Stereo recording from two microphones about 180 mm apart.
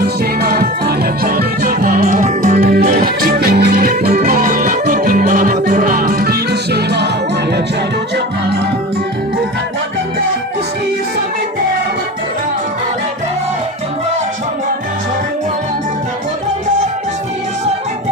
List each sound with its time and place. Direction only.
0.0 s music: 60° right (ahead or behind)
4.2 s music: 50° right (ahead or behind); by 7.1 s 65° right (ahead or behind)